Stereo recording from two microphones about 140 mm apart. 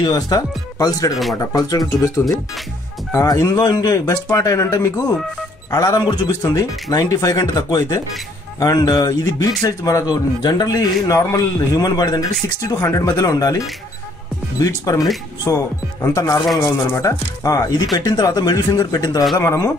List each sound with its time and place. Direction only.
0.0 s a man's voice: 30° left (ahead or behind)
15.4 s a man's voice: 20° left (ahead or behind)